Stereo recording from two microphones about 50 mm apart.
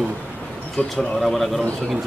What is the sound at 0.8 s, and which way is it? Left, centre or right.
Speech, left.